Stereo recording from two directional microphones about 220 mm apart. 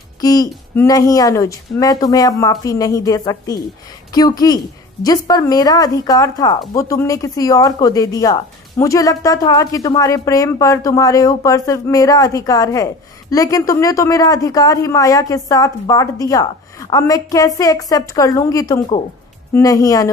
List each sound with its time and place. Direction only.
0.2 s speech: 15° left (ahead or behind)